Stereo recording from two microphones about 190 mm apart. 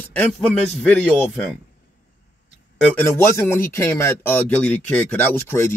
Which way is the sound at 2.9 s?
10° left (ahead or behind).